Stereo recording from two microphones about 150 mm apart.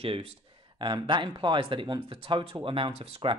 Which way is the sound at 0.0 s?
40° right (ahead or behind).